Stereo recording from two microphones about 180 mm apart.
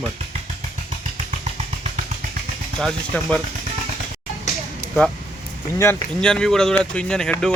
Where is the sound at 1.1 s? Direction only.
35° right (ahead or behind).